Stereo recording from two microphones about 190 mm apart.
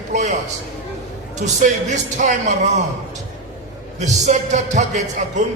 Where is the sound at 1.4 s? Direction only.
40° right (ahead or behind).